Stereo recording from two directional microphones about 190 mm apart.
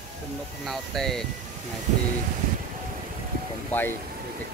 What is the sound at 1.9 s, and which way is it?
Speech, 40° right (ahead or behind).